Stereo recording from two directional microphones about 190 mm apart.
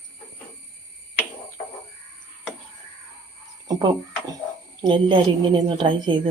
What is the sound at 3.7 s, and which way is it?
A woman's voice, 25° right (ahead or behind).